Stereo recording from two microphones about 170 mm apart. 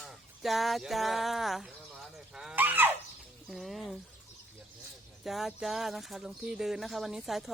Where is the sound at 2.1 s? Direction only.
5° right (ahead or behind).